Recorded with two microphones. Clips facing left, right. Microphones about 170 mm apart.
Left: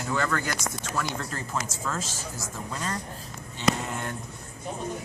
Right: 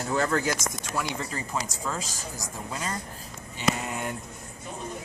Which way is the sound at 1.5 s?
10° right (ahead or behind).